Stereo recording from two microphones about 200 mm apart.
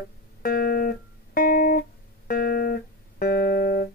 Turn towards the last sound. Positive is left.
turn(degrees=50)  # may be behind; listen again after turning